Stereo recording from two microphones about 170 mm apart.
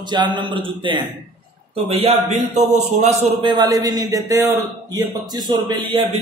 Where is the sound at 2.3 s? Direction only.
45° right (ahead or behind).